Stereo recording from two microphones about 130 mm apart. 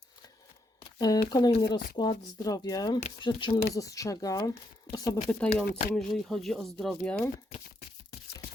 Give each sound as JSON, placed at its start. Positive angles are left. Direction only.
{"t": 0.9, "sound": "a sound", "side_deg": 30}
{"t": 1.3, "sound": "speech", "side_deg": 30}
{"t": 3.8, "sound": "speech", "side_deg": 25}
{"t": 5.3, "sound": "speech", "side_deg": 10}